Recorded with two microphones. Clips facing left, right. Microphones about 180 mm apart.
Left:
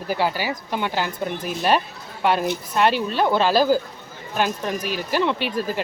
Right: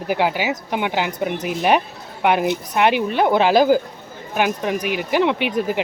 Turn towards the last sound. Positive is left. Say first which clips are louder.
# right 4 dB
turn(degrees=-20)  # may be behind; listen again after turning